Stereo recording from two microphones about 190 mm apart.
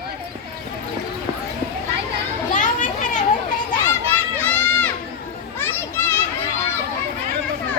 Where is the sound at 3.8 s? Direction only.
10° left (ahead or behind).